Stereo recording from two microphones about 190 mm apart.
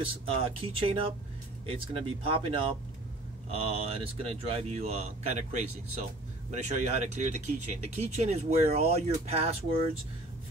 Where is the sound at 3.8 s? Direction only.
30° right (ahead or behind).